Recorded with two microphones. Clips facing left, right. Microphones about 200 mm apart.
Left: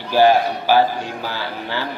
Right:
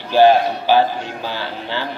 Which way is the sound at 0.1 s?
20° right (ahead or behind).